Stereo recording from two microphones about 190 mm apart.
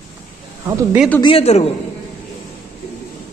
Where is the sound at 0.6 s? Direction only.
10° right (ahead or behind).